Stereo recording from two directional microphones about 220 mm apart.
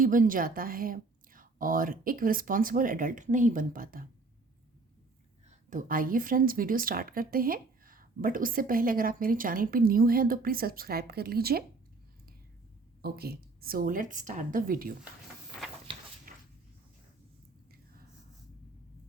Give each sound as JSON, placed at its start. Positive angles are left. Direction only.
{"t": 0.0, "sound": "speech", "side_deg": -40}
{"t": 5.5, "sound": "speech", "side_deg": -40}
{"t": 13.0, "sound": "speech", "side_deg": -45}
{"t": 16.3, "sound": "a sound", "side_deg": -40}